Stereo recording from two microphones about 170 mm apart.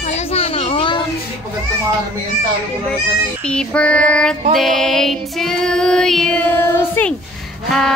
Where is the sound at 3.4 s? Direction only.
5° left (ahead or behind).